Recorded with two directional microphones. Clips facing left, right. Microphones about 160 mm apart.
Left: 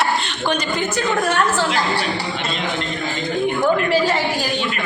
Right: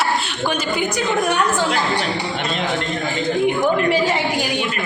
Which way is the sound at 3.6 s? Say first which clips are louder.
Even; 15° right (ahead or behind).